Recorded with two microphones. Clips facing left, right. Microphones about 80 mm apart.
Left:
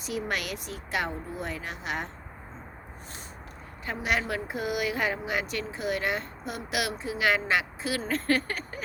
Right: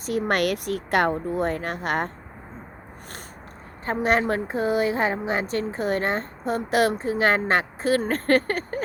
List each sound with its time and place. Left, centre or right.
0.0 s speech: right
3.8 s speech: right